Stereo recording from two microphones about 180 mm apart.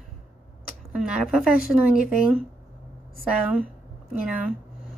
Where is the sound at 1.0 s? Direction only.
Centre (ahead or behind).